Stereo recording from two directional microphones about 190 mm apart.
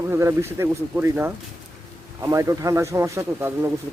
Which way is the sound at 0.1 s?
15° right (ahead or behind).